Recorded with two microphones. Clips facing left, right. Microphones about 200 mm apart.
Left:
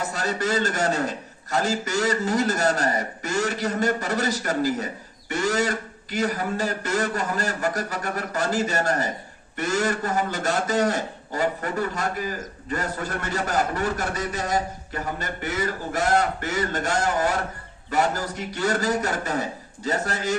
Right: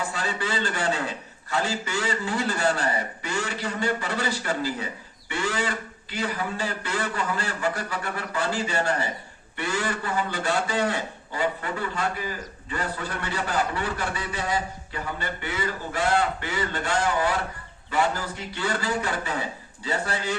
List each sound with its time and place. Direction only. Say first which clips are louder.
0.0 s a man's voice: left 3 dB; 45° left (ahead or behind)